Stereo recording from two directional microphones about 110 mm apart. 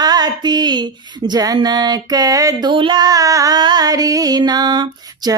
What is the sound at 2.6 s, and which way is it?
Music, 45° right (ahead or behind).